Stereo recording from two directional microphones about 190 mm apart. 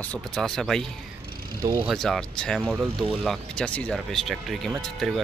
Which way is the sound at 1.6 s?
20° right (ahead or behind).